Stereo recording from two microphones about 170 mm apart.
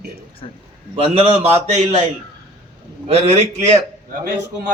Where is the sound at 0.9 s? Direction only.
35° right (ahead or behind).